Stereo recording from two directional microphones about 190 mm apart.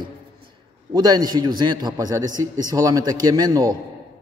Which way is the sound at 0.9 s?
20° right (ahead or behind).